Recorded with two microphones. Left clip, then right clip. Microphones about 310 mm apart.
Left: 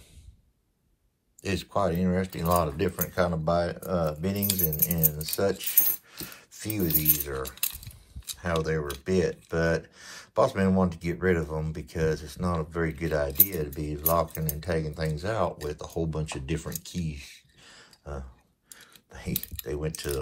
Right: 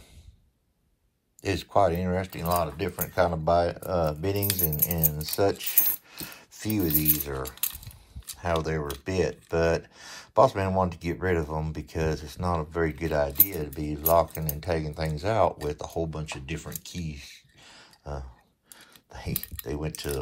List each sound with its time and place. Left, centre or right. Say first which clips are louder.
1.4 s speech: right 4 dB; centre
6.1 s a sound: right 1 dB; centre
8.4 s speech: right 1 dB; centre
19.6 s speech: left 1 dB; centre